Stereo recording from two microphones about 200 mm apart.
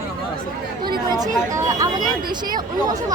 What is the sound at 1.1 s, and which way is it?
Speech, 15° right (ahead or behind).